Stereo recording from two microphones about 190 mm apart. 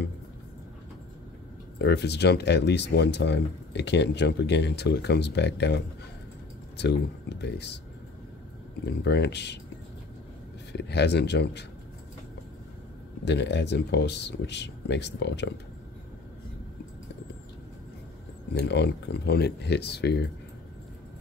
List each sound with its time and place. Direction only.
1.8 s speech: 65° left (ahead or behind)
8.8 s speech: 60° left (ahead or behind)
10.7 s speech: 60° left (ahead or behind)
13.2 s speech: 65° left (ahead or behind)
18.5 s speech: 65° left (ahead or behind)